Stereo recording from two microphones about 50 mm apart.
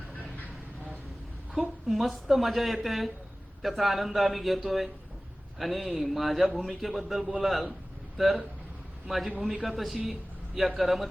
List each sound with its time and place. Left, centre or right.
1.9 s a man's voice: centre
10.1 s a sound: centre
10.8 s a man's voice: centre